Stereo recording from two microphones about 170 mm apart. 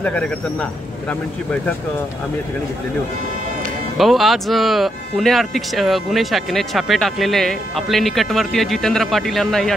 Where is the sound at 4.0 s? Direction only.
Centre (ahead or behind).